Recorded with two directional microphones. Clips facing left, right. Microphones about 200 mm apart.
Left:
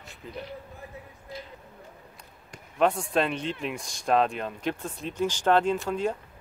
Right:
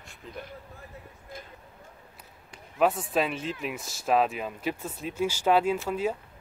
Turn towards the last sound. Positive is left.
turn(degrees=-5)  # may be behind; listen again after turning